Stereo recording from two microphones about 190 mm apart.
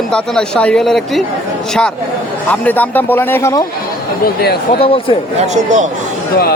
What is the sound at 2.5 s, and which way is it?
A man's voice, 10° left (ahead or behind).